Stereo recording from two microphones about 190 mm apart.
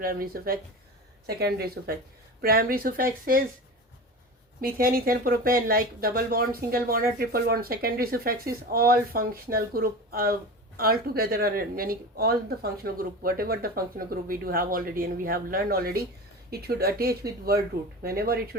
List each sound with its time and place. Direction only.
0.0 s speech: 50° right (ahead or behind)
4.6 s speech: 50° right (ahead or behind)